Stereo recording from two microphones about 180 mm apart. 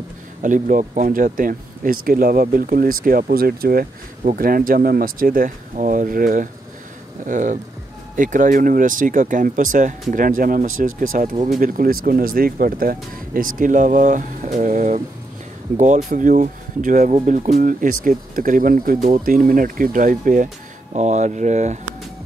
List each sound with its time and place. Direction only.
0.4 s speech: 45° right (ahead or behind)
16.1 s speech: 45° right (ahead or behind)